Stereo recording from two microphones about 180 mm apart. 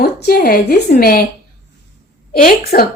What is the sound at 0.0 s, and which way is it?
Speech, 55° left (ahead or behind).